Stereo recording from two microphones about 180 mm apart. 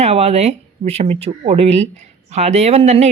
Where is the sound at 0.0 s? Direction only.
35° right (ahead or behind).